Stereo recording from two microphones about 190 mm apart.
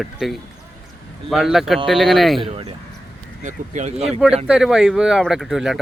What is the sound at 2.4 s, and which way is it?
Speech, 30° right (ahead or behind).